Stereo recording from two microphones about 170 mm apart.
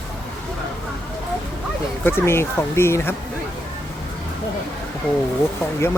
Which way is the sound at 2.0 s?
15° left (ahead or behind).